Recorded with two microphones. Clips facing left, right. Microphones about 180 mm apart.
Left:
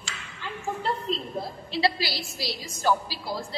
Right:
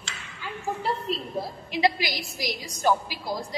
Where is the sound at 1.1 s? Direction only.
5° right (ahead or behind).